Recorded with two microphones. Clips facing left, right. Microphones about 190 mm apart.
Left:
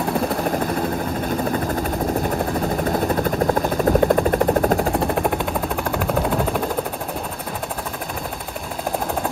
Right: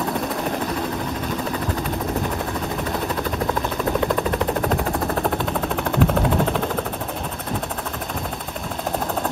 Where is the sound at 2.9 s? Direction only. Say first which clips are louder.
Left 5 dB; 40° left (ahead or behind).